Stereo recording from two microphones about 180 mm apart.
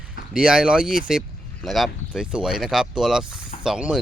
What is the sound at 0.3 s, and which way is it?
Speech, 5° right (ahead or behind).